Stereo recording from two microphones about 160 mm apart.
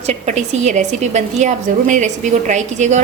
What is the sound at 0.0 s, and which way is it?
A woman's voice, 45° right (ahead or behind).